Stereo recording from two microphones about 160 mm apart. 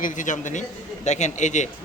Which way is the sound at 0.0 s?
50° left (ahead or behind).